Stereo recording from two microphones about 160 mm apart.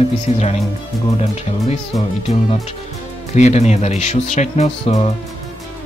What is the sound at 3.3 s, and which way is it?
Speech, 45° left (ahead or behind).